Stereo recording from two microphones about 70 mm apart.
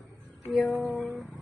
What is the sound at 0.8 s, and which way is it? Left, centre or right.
Speech, centre.